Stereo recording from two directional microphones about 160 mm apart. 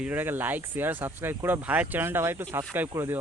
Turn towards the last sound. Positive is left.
turn(degrees=-15)  # may be behind; listen again after turning